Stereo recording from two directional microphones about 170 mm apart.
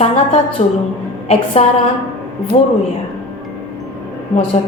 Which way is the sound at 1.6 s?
35° left (ahead or behind).